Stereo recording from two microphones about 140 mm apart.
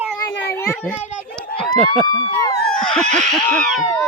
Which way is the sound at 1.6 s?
5° left (ahead or behind).